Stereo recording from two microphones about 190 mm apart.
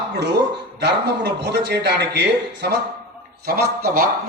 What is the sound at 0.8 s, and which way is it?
A man's voice, 60° right (ahead or behind).